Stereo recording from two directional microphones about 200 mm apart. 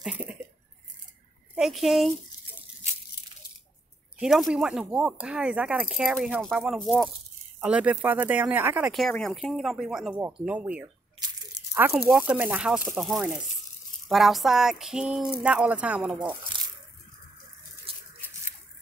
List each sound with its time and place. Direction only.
0.0 s cough: 5° right (ahead or behind)
1.5 s speech: centre (ahead or behind)
4.2 s speech: centre (ahead or behind)
11.1 s a sound: 20° right (ahead or behind)
11.8 s speech: 5° right (ahead or behind)